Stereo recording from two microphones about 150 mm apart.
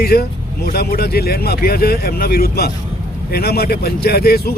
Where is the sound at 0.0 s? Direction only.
90° left.